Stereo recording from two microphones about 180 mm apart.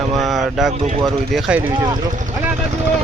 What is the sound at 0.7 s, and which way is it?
Speech, 35° right (ahead or behind).